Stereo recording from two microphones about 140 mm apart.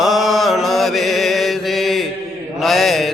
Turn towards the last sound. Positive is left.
turn(degrees=0)  # may be behind; listen again after turning